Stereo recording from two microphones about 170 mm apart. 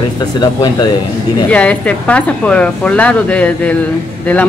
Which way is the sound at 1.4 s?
10° left (ahead or behind).